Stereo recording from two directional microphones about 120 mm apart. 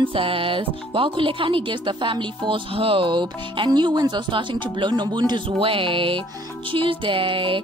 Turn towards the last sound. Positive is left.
turn(degrees=-45)  # may be behind; listen again after turning